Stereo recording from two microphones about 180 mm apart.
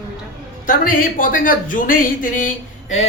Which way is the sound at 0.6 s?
50° left (ahead or behind).